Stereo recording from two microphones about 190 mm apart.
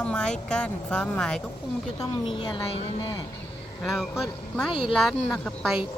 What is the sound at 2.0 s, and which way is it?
Speech, 25° left (ahead or behind).